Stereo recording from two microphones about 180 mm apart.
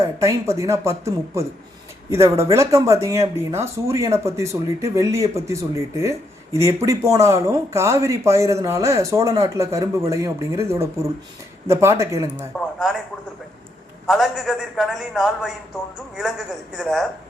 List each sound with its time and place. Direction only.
0.0 s speech: 15° right (ahead or behind)
12.5 s a man's voice: centre (ahead or behind)
14.1 s a man's voice: centre (ahead or behind)
16.7 s a man's voice: centre (ahead or behind)